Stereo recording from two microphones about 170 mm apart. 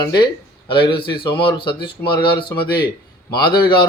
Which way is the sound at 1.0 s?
65° left (ahead or behind).